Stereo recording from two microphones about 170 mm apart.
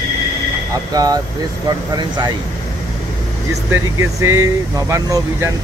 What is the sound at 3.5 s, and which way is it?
Speech, 15° right (ahead or behind).